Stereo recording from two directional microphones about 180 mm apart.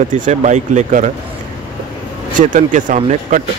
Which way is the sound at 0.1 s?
45° right (ahead or behind).